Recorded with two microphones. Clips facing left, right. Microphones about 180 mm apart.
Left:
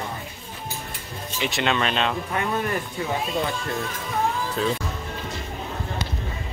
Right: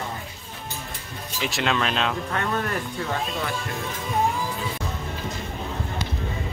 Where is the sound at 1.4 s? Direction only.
Centre (ahead or behind).